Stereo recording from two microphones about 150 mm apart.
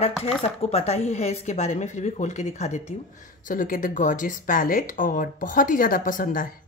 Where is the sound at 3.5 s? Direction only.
65° left (ahead or behind).